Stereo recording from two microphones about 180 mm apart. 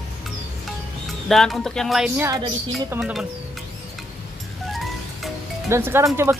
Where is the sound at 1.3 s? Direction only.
Centre (ahead or behind).